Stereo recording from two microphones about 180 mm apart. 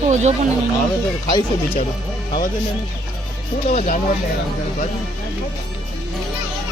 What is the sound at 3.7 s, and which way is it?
Speech, 40° left (ahead or behind).